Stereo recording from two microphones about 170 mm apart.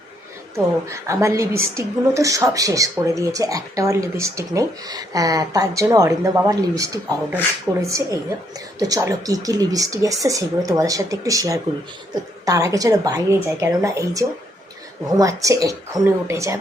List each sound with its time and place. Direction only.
0.5 s a woman's voice: 15° right (ahead or behind)